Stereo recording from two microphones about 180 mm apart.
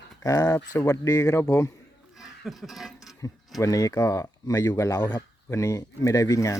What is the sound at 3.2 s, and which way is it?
Speech, 20° left (ahead or behind).